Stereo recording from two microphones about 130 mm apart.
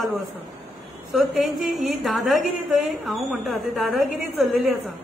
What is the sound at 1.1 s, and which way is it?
A woman's voice, centre (ahead or behind).